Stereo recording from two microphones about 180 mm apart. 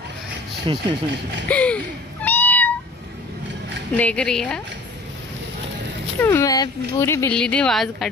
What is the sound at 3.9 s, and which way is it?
Speech, 5° left (ahead or behind).